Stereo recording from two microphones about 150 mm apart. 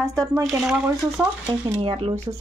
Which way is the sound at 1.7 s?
40° right (ahead or behind).